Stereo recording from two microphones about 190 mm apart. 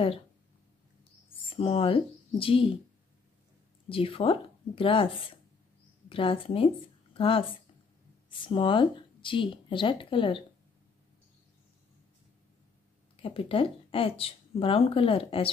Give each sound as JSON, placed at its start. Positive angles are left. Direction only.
{"t": 1.6, "sound": "speech", "side_deg": 30}
{"t": 3.9, "sound": "speech", "side_deg": 30}
{"t": 13.1, "sound": "speech", "side_deg": 30}